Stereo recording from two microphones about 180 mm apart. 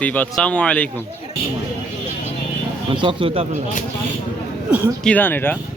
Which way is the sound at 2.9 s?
25° right (ahead or behind).